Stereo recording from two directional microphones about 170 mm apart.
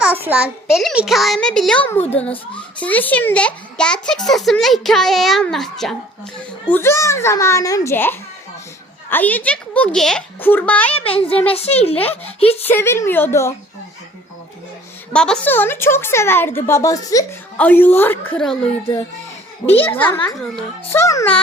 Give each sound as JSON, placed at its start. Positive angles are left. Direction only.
{"t": 0.0, "sound": "a child's voice", "side_deg": -10}
{"t": 6.7, "sound": "a woman's voice", "side_deg": 15}
{"t": 10.9, "sound": "a woman's voice", "side_deg": 35}
{"t": 12.6, "sound": "a woman's voice", "side_deg": 15}
{"t": 15.1, "sound": "a woman's voice", "side_deg": 5}
{"t": 17.6, "sound": "a woman's voice", "side_deg": 10}
{"t": 19.6, "sound": "a woman's voice", "side_deg": 35}
{"t": 20.2, "sound": "a child's voice", "side_deg": 5}
{"t": 20.9, "sound": "a woman's voice", "side_deg": 15}